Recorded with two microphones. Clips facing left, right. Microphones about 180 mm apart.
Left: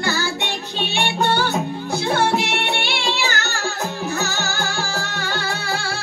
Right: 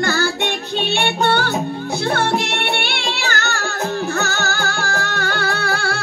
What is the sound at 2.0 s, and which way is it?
Music, 55° right (ahead or behind).